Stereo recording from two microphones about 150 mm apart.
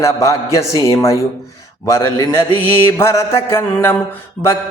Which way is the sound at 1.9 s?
15° left (ahead or behind).